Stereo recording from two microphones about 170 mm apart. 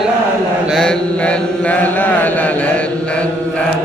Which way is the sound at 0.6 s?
5° left (ahead or behind).